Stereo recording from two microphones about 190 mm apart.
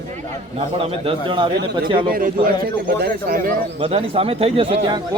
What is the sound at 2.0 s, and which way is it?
Speech, 50° right (ahead or behind).